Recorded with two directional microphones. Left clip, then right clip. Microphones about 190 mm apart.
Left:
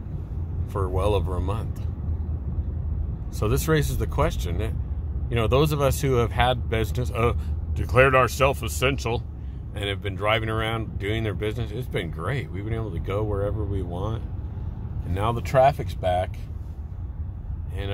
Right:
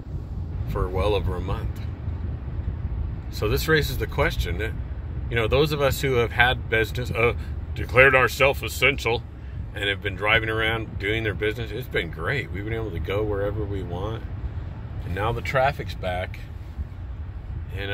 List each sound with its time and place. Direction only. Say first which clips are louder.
0.9 s speech: right 1 dB; 20° left (ahead or behind)
3.3 s speech: right 2 dB; 20° left (ahead or behind)
15.4 s speech: left 5 dB; 25° left (ahead or behind)